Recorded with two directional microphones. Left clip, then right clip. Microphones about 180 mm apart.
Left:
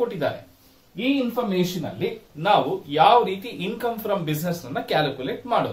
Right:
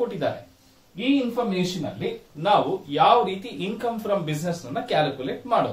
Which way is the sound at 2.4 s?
15° left (ahead or behind).